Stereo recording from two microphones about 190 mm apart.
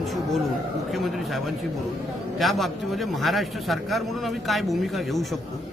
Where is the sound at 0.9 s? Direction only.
Centre (ahead or behind).